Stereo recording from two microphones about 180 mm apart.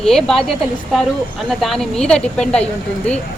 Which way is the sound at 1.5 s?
Centre (ahead or behind).